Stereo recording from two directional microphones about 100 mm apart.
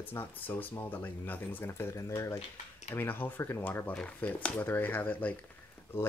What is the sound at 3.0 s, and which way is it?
Speech, 20° left (ahead or behind).